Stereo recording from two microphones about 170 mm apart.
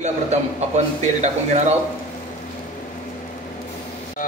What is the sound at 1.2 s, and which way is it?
Speech, 40° right (ahead or behind).